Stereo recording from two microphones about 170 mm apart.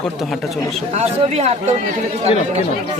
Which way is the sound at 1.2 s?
40° right (ahead or behind).